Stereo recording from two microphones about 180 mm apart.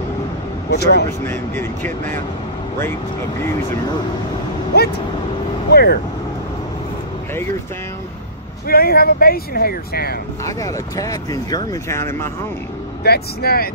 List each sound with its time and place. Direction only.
0.7 s speech: 65° left (ahead or behind)
1.2 s speech: 10° left (ahead or behind)
5.7 s speech: 60° left (ahead or behind)
8.6 s speech: 55° left (ahead or behind)
10.4 s speech: 20° left (ahead or behind)
13.0 s speech: 60° left (ahead or behind)